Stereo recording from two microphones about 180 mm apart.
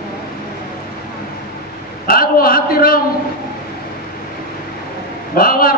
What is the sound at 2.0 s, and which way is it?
A man's voice, 55° left (ahead or behind).